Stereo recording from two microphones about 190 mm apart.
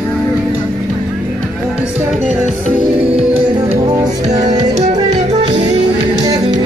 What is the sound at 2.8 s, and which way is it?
Music, 30° right (ahead or behind).